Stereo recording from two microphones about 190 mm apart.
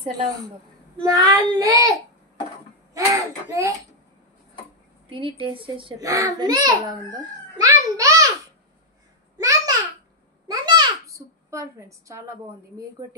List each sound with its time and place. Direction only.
1.0 s a child's voice: 20° right (ahead or behind)
2.9 s throat clearing: 15° right (ahead or behind)
3.4 s a child's voice: 15° right (ahead or behind)
5.1 s a child's voice: 25° right (ahead or behind)
7.6 s a sound: 20° right (ahead or behind)
9.4 s babbling: 15° right (ahead or behind)
10.5 s a sound: 20° right (ahead or behind)